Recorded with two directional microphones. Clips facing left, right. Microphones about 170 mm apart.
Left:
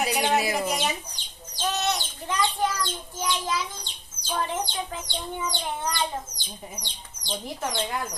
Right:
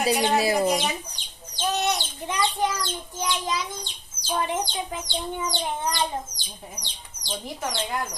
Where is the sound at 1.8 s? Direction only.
15° right (ahead or behind).